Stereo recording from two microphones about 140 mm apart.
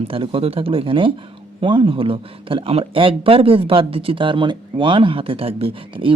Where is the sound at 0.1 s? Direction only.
40° right (ahead or behind).